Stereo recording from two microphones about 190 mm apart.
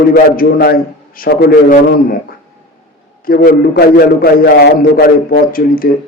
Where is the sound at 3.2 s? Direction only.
50° left (ahead or behind).